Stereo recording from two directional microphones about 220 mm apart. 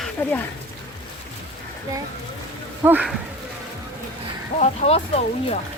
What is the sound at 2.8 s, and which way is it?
Speech, 5° right (ahead or behind).